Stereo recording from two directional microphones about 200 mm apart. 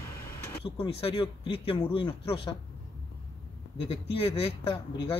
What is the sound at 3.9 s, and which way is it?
Speech, 25° left (ahead or behind).